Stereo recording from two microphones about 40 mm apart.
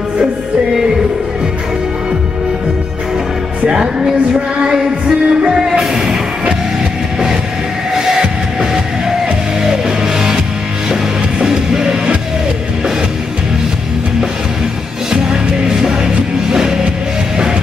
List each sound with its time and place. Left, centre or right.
3.6 s music: centre
5.6 s music: centre
7.9 s music: centre
15.0 s music: centre